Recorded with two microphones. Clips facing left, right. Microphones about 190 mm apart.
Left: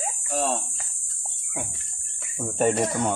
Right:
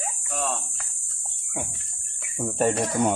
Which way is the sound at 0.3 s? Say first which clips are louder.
Left 4 dB; 30° left (ahead or behind).